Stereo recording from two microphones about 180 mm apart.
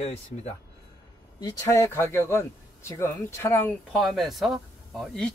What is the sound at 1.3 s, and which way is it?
Speech, 20° left (ahead or behind).